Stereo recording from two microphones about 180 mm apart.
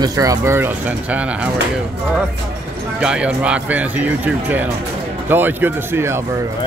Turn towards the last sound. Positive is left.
turn(degrees=-15)  # may be behind; listen again after turning